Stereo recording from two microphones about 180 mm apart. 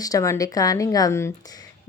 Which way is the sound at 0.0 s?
20° left (ahead or behind).